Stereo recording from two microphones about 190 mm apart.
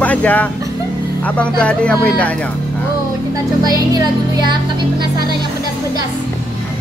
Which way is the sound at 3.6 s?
20° right (ahead or behind).